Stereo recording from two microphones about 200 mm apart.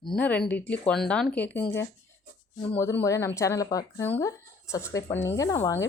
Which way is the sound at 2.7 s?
10° left (ahead or behind).